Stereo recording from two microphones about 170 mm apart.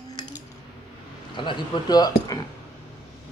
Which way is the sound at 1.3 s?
30° left (ahead or behind).